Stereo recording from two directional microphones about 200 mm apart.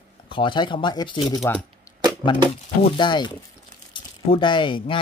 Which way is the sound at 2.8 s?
25° left (ahead or behind).